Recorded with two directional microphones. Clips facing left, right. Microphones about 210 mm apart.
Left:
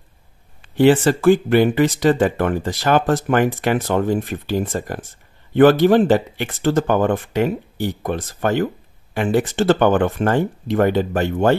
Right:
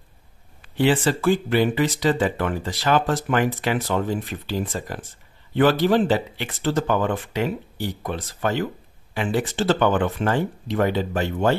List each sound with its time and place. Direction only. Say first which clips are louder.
0.7 s speech: left 6 dB; 45° left (ahead or behind)